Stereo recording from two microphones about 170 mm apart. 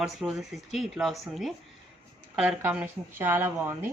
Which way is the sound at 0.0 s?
Centre (ahead or behind).